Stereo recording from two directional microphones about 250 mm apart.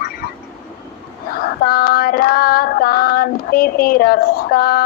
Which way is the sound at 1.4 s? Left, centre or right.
Left.